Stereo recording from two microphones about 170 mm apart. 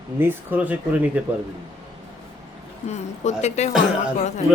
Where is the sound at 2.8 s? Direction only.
40° left (ahead or behind).